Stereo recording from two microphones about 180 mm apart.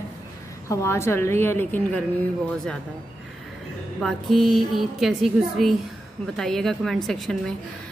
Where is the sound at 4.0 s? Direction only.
Centre (ahead or behind).